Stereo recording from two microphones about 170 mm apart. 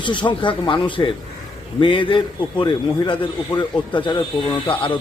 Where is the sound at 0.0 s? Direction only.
30° left (ahead or behind).